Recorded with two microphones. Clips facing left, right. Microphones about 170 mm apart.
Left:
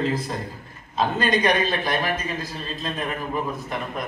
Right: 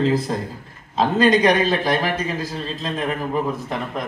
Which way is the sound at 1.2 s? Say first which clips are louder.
Right 6 dB; 90° right.